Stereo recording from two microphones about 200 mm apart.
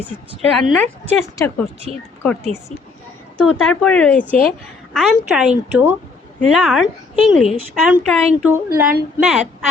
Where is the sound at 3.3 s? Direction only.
Centre (ahead or behind).